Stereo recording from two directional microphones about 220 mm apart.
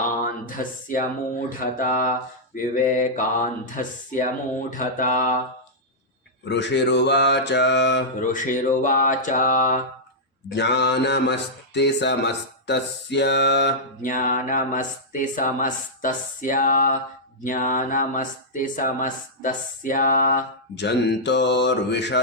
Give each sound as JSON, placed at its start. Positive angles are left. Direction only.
{"t": 0.2, "sound": "speech", "side_deg": 40}
{"t": 1.5, "sound": "mantra", "side_deg": 40}
{"t": 6.4, "sound": "speech", "side_deg": 50}
{"t": 8.3, "sound": "mantra", "side_deg": 35}
{"t": 10.5, "sound": "speech", "side_deg": 50}
{"t": 14.0, "sound": "mantra", "side_deg": 35}
{"t": 20.7, "sound": "speech", "side_deg": 50}